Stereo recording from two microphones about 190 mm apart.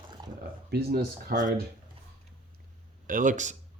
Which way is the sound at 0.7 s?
50° right (ahead or behind).